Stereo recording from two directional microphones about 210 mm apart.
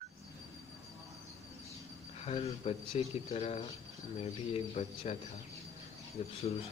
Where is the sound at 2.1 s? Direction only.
30° left (ahead or behind).